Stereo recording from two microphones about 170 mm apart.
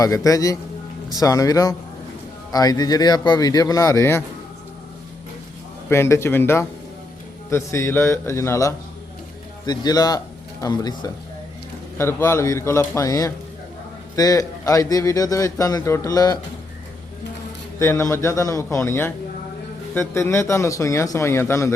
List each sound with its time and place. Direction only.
0.0 s a man's voice: 20° left (ahead or behind)
5.9 s a man's voice: 15° left (ahead or behind)
17.7 s speech: 15° left (ahead or behind)